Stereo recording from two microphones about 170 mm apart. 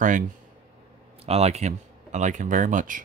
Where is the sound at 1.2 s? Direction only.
40° right (ahead or behind).